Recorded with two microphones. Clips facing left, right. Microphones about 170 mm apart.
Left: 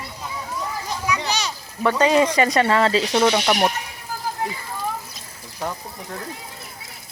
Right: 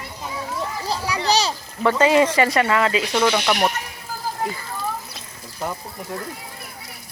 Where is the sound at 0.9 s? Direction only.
35° right (ahead or behind).